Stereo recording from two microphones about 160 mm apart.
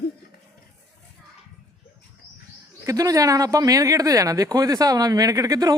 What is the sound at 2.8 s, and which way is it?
Speech, 20° right (ahead or behind).